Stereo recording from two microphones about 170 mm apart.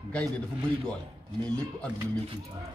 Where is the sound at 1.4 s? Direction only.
5° left (ahead or behind).